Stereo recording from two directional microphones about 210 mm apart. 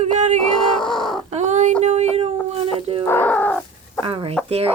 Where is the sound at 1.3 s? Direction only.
35° right (ahead or behind).